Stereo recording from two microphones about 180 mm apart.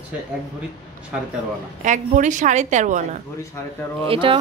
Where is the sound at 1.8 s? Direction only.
45° right (ahead or behind).